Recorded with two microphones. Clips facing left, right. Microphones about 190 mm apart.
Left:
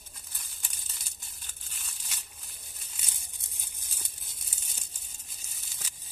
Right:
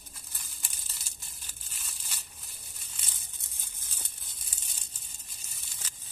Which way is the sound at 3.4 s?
15° left (ahead or behind).